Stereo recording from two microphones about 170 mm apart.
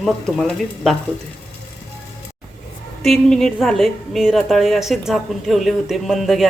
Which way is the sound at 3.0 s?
Centre (ahead or behind).